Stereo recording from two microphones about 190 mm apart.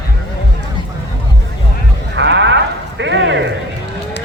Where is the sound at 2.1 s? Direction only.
70° right (ahead or behind).